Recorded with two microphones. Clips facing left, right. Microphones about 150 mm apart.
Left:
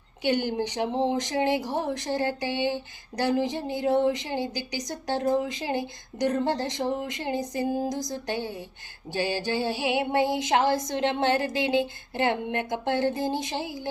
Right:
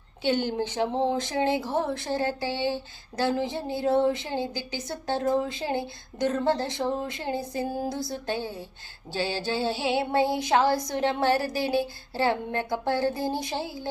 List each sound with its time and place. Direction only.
0.2 s speech: 15° left (ahead or behind)
9.1 s music: 15° left (ahead or behind)